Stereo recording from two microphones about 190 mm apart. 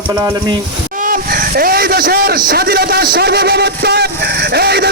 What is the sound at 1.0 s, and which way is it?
A man's voice, 50° right (ahead or behind).